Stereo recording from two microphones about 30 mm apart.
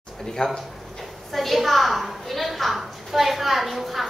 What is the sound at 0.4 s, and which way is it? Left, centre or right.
Speech, left.